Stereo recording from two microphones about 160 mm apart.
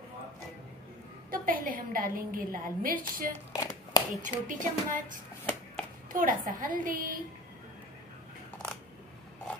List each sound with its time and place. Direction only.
1.3 s a woman's voice: 60° right (ahead or behind)
3.3 s a sound: 20° left (ahead or behind)
4.2 s a woman's voice: 55° right (ahead or behind)